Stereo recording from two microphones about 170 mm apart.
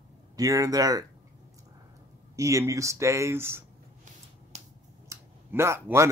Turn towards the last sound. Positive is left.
turn(degrees=-15)  # may be behind; listen again after turning